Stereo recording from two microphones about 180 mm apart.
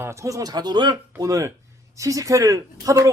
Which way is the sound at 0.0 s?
15° right (ahead or behind).